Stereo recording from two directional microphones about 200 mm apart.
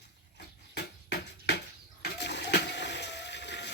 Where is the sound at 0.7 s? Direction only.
55° left (ahead or behind).